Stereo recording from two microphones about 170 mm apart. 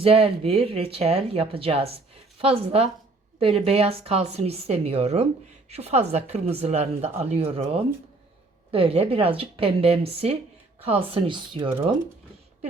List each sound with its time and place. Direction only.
0.0 s a woman's voice: 35° right (ahead or behind)